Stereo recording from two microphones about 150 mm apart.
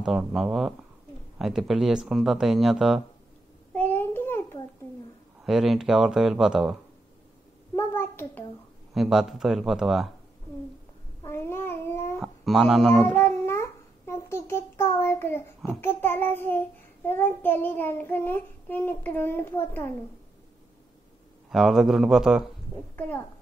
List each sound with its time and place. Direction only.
0.0 s speech: centre (ahead or behind)
3.7 s a sound: 10° left (ahead or behind)
5.4 s speech: centre (ahead or behind)
7.7 s a sound: 15° left (ahead or behind)
8.9 s speech: centre (ahead or behind)
11.2 s a sound: 15° left (ahead or behind)
12.2 s speech: centre (ahead or behind)
13.1 s babbling: 15° left (ahead or behind)
15.8 s child singing: 15° left (ahead or behind)
21.5 s speech: centre (ahead or behind)
22.9 s a child's voice: 10° left (ahead or behind)